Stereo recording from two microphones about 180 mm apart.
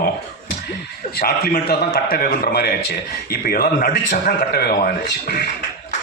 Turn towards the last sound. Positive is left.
turn(degrees=55)  # may be behind; listen again after turning